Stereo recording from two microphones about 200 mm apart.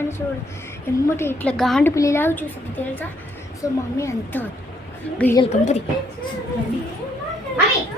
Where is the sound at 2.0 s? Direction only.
15° left (ahead or behind).